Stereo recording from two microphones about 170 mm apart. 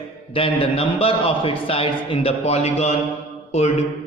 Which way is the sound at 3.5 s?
40° left (ahead or behind).